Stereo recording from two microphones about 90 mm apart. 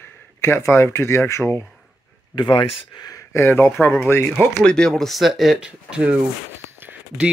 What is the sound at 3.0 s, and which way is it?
Speech, 35° left (ahead or behind).